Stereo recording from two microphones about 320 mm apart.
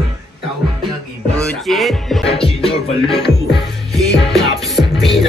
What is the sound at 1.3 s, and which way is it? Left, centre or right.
A man's voice, centre.